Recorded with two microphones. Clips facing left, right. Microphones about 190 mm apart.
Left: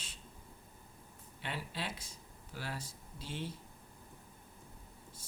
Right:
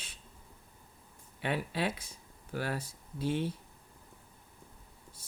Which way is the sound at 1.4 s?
60° right (ahead or behind).